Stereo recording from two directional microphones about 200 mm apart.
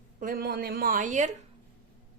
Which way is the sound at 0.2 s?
45° right (ahead or behind).